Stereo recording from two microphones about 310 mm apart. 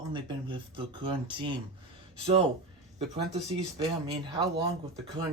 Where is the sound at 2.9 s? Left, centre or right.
Centre.